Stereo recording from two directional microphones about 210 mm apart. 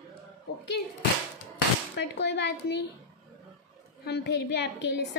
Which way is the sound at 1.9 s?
55° left (ahead or behind).